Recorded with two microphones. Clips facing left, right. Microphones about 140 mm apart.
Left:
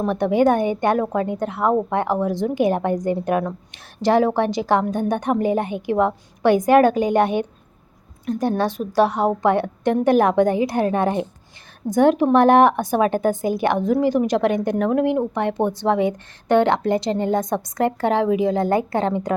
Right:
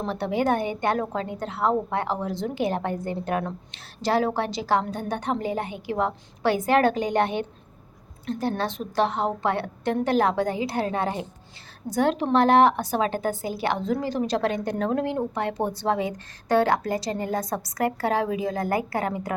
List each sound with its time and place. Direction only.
0.8 s a woman's voice: 20° left (ahead or behind)